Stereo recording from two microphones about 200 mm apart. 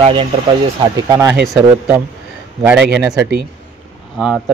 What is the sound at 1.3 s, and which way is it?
Speech, centre (ahead or behind).